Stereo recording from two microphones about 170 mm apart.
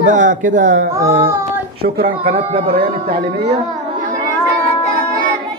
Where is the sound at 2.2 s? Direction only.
35° right (ahead or behind).